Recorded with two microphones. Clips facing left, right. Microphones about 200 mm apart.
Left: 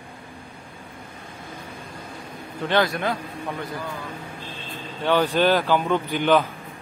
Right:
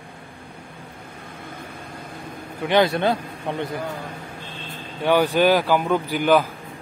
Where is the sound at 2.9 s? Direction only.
30° right (ahead or behind).